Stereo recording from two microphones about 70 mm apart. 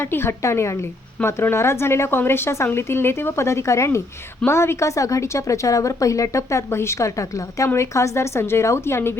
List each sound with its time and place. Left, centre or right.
0.0 s a woman's voice: left